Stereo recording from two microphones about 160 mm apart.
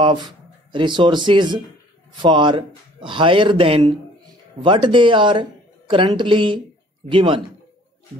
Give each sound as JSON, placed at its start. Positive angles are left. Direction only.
{"t": 0.0, "sound": "speech", "side_deg": -30}